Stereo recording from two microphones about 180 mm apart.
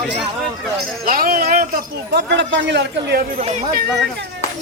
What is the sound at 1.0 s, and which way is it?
Speech, 55° right (ahead or behind).